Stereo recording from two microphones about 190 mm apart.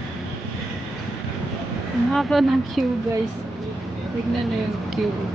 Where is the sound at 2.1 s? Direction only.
Centre (ahead or behind).